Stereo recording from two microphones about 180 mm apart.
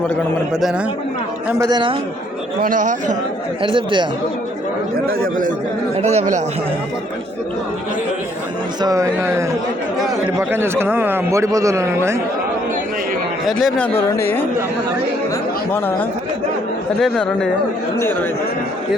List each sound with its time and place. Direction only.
0.5 s speech: centre (ahead or behind)
1.5 s a man's voice: 15° right (ahead or behind)
2.6 s a man's voice: 50° right (ahead or behind)
3.6 s speech: 30° right (ahead or behind)
5.0 s speech: 55° right (ahead or behind)
6.0 s speech: 35° right (ahead or behind)
8.8 s a man's voice: 20° right (ahead or behind)
13.6 s speech: 5° left (ahead or behind)
17.0 s speech: 5° left (ahead or behind)